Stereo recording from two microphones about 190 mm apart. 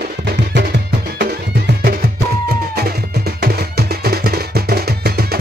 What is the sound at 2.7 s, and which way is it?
Music, 55° right (ahead or behind).